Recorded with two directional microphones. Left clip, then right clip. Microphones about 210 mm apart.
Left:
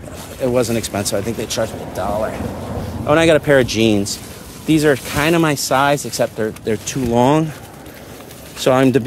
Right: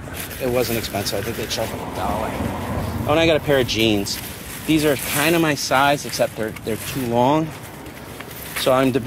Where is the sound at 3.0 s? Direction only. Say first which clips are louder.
Left 5 dB; 45° left (ahead or behind).